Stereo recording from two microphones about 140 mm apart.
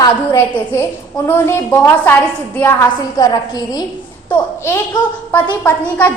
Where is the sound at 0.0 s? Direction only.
25° left (ahead or behind).